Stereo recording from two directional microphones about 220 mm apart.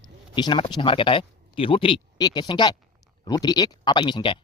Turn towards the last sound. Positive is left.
turn(degrees=20)  # may be behind; listen again after turning